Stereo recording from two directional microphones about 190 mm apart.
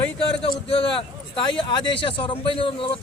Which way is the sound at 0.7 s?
25° left (ahead or behind).